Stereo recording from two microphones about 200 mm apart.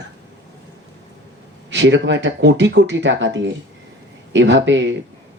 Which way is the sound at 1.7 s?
65° right (ahead or behind).